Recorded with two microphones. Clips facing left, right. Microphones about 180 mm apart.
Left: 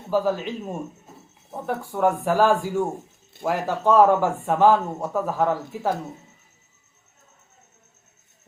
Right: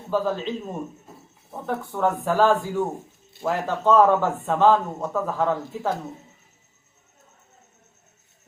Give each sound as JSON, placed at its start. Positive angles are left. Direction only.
{"t": 0.1, "sound": "speech", "side_deg": 10}